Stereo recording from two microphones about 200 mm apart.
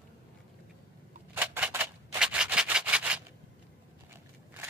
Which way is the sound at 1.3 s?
10° right (ahead or behind).